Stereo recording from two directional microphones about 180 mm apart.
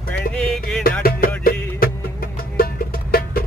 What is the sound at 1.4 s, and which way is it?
Music, 55° left (ahead or behind).